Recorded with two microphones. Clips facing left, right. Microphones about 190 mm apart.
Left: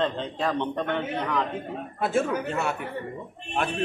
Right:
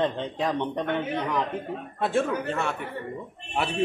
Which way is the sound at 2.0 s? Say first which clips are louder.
Even; centre (ahead or behind).